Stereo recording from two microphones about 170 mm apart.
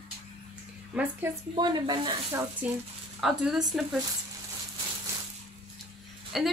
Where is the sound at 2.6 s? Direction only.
10° right (ahead or behind).